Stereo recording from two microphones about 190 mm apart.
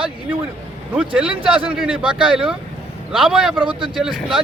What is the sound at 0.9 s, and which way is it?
Speech, 5° right (ahead or behind).